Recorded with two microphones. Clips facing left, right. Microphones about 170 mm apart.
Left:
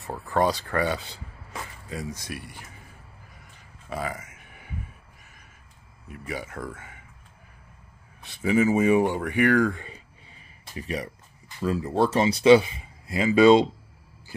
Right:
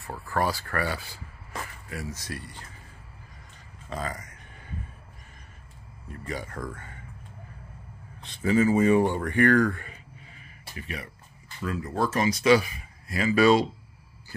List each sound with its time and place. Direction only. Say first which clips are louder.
0.0 s speech: left 4 dB; 20° left (ahead or behind)
3.9 s a sound: left 2 dB; 10° left (ahead or behind)
6.0 s speech: left 1 dB; 10° left (ahead or behind)
8.2 s speech: left 1 dB; 10° left (ahead or behind)
10.7 s speech: left 6 dB; 35° left (ahead or behind)